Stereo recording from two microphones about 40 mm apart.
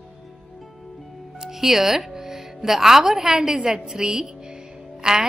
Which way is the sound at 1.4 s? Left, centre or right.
Centre.